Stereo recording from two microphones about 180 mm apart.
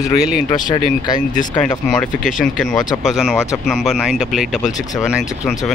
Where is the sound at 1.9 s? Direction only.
Centre (ahead or behind).